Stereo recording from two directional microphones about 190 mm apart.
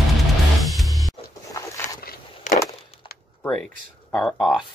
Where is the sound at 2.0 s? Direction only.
50° left (ahead or behind).